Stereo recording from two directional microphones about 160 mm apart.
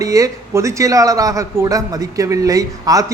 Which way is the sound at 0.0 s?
20° right (ahead or behind).